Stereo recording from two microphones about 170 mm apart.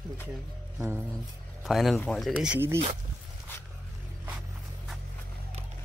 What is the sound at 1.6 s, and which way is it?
Speech, centre (ahead or behind).